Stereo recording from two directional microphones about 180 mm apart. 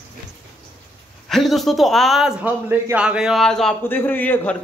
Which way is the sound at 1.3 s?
Centre (ahead or behind).